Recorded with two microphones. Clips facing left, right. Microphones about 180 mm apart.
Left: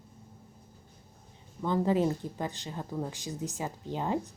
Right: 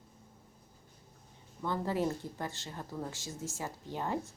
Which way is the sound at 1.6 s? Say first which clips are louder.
Left 6 dB; 15° left (ahead or behind).